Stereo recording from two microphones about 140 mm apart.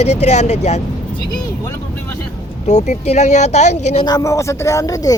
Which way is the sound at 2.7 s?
55° left (ahead or behind).